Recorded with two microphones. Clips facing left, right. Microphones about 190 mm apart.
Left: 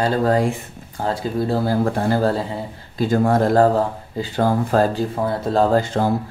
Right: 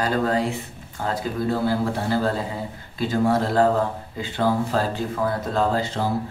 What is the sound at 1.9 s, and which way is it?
Speech, 45° left (ahead or behind).